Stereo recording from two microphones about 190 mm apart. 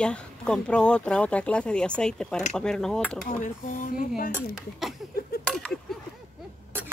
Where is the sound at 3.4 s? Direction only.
40° left (ahead or behind).